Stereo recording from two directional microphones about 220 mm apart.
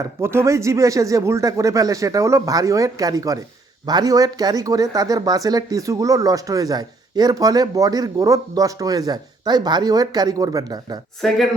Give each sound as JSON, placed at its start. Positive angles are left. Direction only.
{"t": 0.2, "sound": "speech", "side_deg": -10}
{"t": 11.2, "sound": "speech", "side_deg": 0}